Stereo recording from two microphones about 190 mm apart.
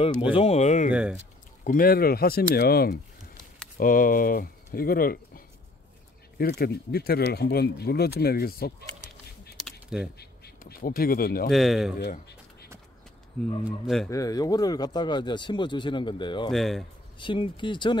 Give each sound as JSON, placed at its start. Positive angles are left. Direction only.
{"t": 0.3, "sound": "speech", "side_deg": 30}
{"t": 0.9, "sound": "speech", "side_deg": -5}
{"t": 1.6, "sound": "speech", "side_deg": 45}
{"t": 9.7, "sound": "typing", "side_deg": -5}
{"t": 10.1, "sound": "speech", "side_deg": 55}
{"t": 11.5, "sound": "speech", "side_deg": 0}
{"t": 12.0, "sound": "speech", "side_deg": 60}
{"t": 14.0, "sound": "speech", "side_deg": 15}
{"t": 16.4, "sound": "speech", "side_deg": 0}
{"t": 17.2, "sound": "speech", "side_deg": 25}